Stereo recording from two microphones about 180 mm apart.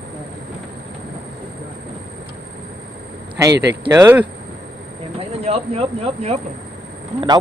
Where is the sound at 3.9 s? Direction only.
15° right (ahead or behind).